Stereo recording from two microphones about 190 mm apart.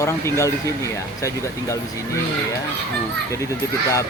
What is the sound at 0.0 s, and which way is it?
Speech, 15° left (ahead or behind).